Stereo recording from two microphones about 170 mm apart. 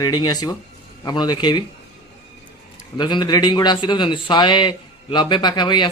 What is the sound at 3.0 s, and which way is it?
A man's voice, 25° left (ahead or behind).